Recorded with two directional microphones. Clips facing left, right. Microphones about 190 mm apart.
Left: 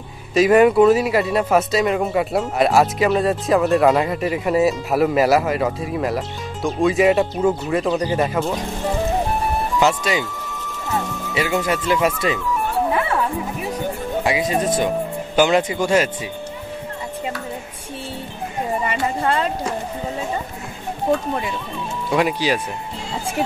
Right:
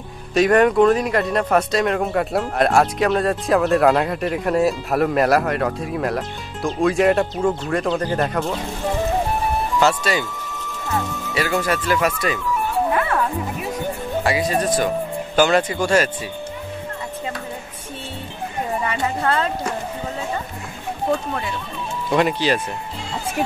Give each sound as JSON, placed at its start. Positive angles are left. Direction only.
{"t": 0.3, "sound": "speech", "side_deg": 5}
{"t": 9.8, "sound": "speech", "side_deg": 15}
{"t": 11.3, "sound": "speech", "side_deg": 15}
{"t": 14.2, "sound": "speech", "side_deg": 15}
{"t": 18.9, "sound": "speech", "side_deg": 10}
{"t": 22.1, "sound": "speech", "side_deg": 5}